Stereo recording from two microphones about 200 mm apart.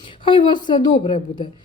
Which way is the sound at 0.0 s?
25° left (ahead or behind).